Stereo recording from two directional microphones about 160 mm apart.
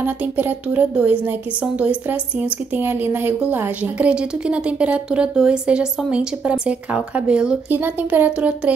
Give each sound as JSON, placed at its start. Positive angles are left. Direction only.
{"t": 0.0, "sound": "speech", "side_deg": -10}